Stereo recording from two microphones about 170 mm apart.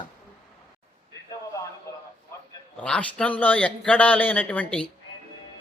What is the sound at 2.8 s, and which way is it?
A man's voice, 5° left (ahead or behind).